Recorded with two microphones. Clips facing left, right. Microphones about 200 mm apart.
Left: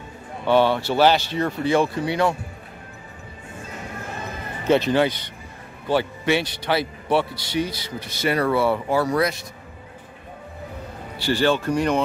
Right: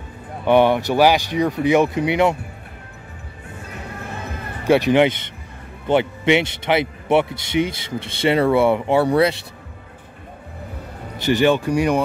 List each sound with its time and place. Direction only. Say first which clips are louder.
0.5 s speech: right 3 dB; 15° right (ahead or behind)
4.6 s speech: right 4 dB; 15° right (ahead or behind); by 9.4 s 30° right (ahead or behind)
11.1 s speech: right 4 dB; 20° right (ahead or behind)